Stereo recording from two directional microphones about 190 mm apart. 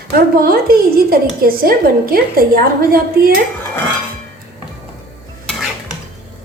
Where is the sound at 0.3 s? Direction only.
50° right (ahead or behind).